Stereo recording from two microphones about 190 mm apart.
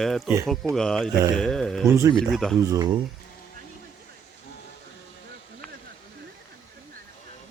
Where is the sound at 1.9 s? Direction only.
15° right (ahead or behind).